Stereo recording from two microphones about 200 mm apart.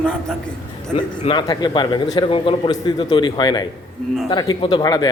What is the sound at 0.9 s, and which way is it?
A man's voice, 25° left (ahead or behind).